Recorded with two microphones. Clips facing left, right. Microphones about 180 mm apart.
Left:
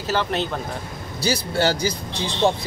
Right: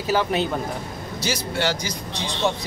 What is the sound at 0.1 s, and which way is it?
Speech, 10° right (ahead or behind).